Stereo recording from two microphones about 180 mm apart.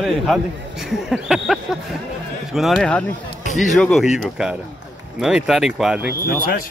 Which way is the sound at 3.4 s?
45° left (ahead or behind).